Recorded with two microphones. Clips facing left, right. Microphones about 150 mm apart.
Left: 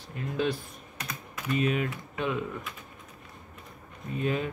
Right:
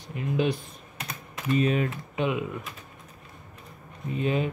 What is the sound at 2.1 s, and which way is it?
Speech, 15° right (ahead or behind).